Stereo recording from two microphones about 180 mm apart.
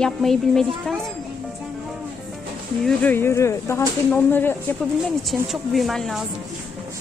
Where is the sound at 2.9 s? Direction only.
10° left (ahead or behind).